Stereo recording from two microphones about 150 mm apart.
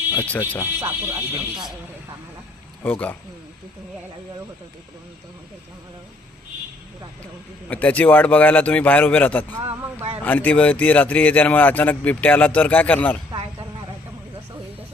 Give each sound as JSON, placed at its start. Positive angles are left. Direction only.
{"t": 0.1, "sound": "speech", "side_deg": 15}
{"t": 0.8, "sound": "speech", "side_deg": -20}
{"t": 2.8, "sound": "speech", "side_deg": 10}
{"t": 7.7, "sound": "speech", "side_deg": 10}